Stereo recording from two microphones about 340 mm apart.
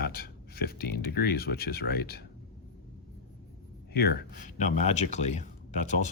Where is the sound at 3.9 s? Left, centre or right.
Left.